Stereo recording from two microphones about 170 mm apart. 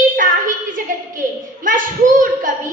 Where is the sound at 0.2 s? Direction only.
50° right (ahead or behind).